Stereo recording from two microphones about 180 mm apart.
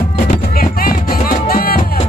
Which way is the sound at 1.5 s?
55° left (ahead or behind).